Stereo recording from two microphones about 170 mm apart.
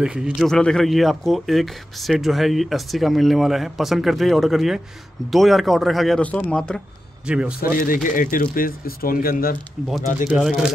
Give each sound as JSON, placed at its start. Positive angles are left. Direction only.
{"t": 0.0, "sound": "speech", "side_deg": -5}
{"t": 7.2, "sound": "speech", "side_deg": -5}
{"t": 7.6, "sound": "speech", "side_deg": 55}
{"t": 10.3, "sound": "speech", "side_deg": -5}